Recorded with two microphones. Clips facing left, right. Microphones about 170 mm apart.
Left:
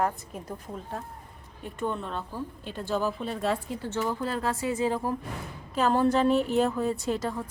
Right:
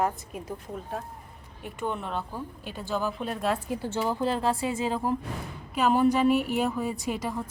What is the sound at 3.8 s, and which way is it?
Speech, 10° right (ahead or behind).